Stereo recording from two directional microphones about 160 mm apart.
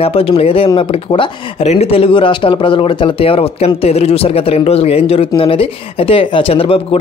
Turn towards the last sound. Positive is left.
turn(degrees=35)  # may be behind; listen again after turning